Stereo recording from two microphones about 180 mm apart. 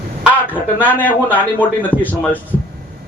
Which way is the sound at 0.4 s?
10° left (ahead or behind).